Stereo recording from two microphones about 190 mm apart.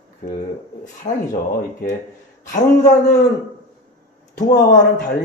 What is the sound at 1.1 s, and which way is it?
Speech, 40° left (ahead or behind).